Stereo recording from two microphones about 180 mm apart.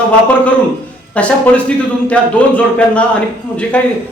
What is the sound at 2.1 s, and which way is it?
Speech, 5° left (ahead or behind).